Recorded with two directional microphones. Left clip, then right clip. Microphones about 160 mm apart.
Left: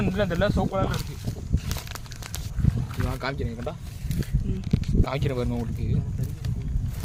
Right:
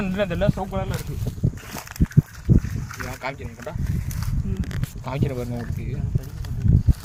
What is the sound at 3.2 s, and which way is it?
Speech, 15° left (ahead or behind).